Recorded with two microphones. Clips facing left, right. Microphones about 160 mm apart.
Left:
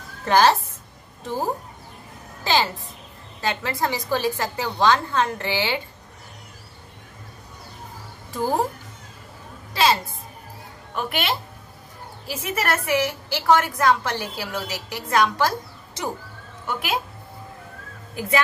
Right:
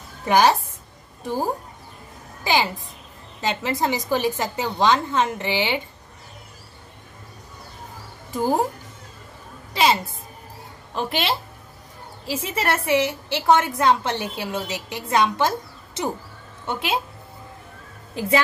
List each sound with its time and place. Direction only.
0.2 s a woman's voice: 15° right (ahead or behind)
8.3 s speech: 15° right (ahead or behind)
10.9 s a woman's voice: 30° right (ahead or behind)
18.2 s a woman's voice: 30° right (ahead or behind)